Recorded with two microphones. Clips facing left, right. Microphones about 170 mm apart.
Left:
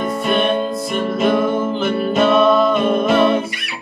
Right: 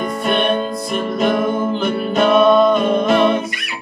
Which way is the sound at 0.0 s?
Centre (ahead or behind).